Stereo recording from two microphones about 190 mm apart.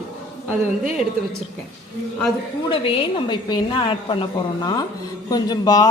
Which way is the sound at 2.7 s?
30° left (ahead or behind).